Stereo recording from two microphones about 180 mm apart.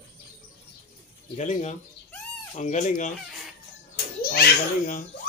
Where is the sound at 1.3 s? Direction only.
40° left (ahead or behind).